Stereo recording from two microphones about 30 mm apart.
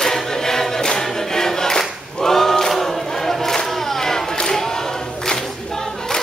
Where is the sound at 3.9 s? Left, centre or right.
Centre.